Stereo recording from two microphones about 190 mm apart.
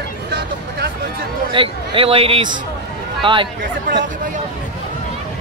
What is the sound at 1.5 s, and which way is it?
Speech, 30° right (ahead or behind).